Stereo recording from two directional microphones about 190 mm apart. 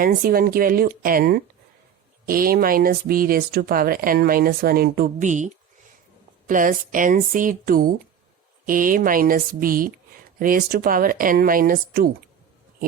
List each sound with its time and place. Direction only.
0.0 s speech: 50° right (ahead or behind)